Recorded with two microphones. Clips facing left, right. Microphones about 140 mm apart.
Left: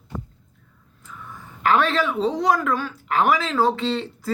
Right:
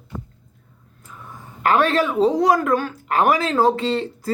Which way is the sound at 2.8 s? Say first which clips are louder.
Right 2 dB; 45° right (ahead or behind).